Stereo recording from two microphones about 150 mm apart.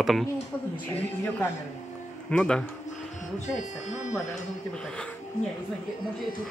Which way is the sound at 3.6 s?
55° left (ahead or behind).